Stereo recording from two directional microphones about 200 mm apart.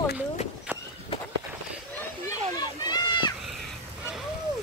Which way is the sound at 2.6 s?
20° left (ahead or behind).